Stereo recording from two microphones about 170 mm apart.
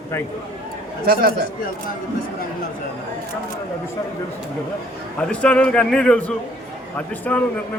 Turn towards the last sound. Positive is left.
turn(degrees=10)  # may be behind; listen again after turning